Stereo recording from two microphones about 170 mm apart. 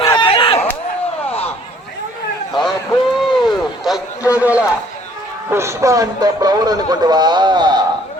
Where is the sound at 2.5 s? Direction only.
Centre (ahead or behind).